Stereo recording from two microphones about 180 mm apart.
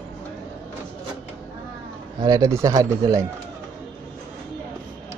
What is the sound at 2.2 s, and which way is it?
Speech, 20° right (ahead or behind).